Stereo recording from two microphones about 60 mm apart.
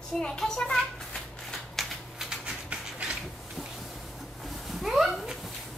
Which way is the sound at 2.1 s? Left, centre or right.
Centre.